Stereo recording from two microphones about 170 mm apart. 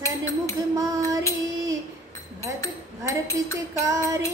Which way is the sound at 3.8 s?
20° right (ahead or behind).